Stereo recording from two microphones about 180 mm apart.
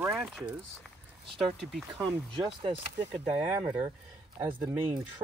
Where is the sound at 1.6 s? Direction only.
Centre (ahead or behind).